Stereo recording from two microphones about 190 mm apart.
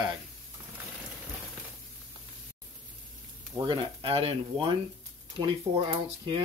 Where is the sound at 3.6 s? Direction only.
25° right (ahead or behind).